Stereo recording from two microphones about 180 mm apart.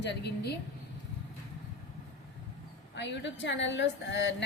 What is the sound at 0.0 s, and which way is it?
Speech, 65° left (ahead or behind).